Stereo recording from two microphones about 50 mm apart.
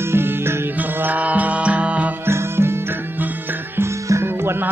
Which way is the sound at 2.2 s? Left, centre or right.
Right.